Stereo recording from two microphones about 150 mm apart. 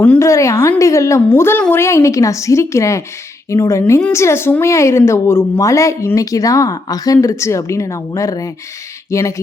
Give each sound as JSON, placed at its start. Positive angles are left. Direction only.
{"t": 0.0, "sound": "a woman's voice", "side_deg": 15}